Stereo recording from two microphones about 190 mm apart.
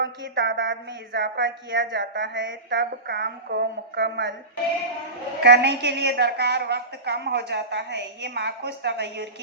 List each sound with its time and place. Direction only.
0.0 s speech: 70° right (ahead or behind)
5.4 s a woman's voice: 60° right (ahead or behind)